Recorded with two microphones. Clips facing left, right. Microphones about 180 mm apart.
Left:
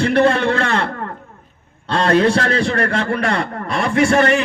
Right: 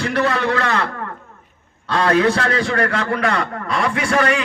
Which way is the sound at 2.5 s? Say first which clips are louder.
Left 1 dB; 25° left (ahead or behind).